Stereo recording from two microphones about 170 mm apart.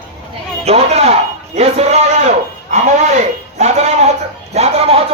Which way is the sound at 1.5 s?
40° right (ahead or behind).